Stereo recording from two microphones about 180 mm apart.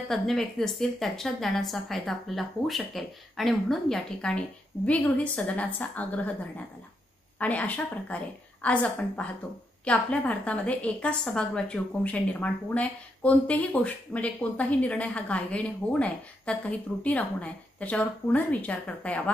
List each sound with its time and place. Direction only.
0.1 s a woman's voice: centre (ahead or behind)
7.3 s a woman's voice: 10° left (ahead or behind)